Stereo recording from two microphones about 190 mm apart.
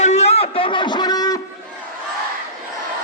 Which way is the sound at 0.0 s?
35° left (ahead or behind).